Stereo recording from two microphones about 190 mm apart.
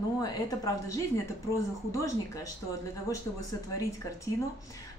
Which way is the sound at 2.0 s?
15° left (ahead or behind).